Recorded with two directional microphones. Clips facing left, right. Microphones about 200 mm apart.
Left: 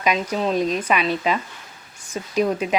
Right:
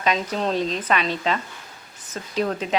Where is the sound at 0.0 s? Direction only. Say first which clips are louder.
Left 2 dB; 10° left (ahead or behind).